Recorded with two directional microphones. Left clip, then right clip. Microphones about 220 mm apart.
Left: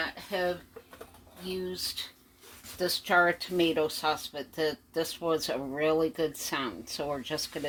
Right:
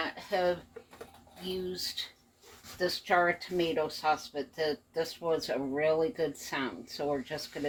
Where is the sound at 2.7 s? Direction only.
40° left (ahead or behind).